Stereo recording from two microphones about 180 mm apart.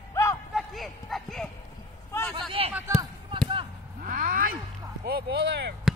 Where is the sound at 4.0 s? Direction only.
50° right (ahead or behind).